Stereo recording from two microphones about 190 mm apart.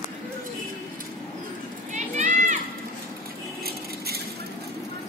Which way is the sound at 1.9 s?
40° right (ahead or behind).